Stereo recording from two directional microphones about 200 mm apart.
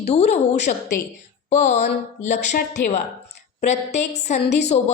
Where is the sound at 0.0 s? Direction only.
35° left (ahead or behind).